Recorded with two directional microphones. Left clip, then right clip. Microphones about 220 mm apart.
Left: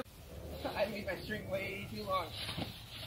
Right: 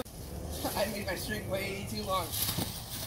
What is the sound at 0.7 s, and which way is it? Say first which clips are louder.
Speech: right 3 dB; centre (ahead or behind).